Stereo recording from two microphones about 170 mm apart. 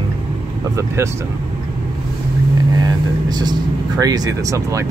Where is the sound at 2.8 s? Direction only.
25° right (ahead or behind).